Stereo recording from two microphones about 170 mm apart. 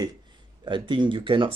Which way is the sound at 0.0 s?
25° right (ahead or behind).